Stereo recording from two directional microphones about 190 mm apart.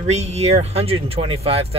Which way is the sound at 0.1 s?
35° right (ahead or behind).